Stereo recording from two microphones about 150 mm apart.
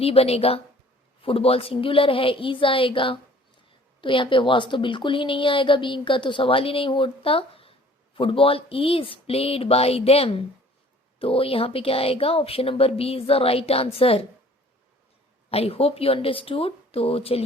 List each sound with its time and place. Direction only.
0.0 s a woman's voice: 40° left (ahead or behind)
15.4 s a woman's voice: 40° left (ahead or behind)